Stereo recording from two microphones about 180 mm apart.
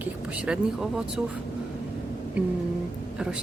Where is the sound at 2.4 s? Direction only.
10° right (ahead or behind).